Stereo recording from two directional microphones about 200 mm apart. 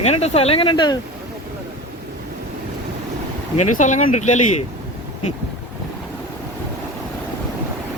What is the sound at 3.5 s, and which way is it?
Speech, 35° left (ahead or behind).